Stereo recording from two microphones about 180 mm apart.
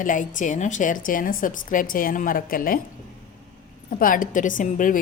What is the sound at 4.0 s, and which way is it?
Speech, 50° left (ahead or behind).